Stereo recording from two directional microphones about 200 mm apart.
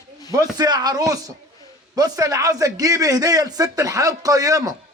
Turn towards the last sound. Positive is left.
turn(degrees=-15)  # may be behind; listen again after turning